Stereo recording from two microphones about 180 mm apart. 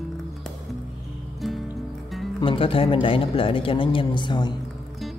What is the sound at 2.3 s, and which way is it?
A man's voice, 30° left (ahead or behind).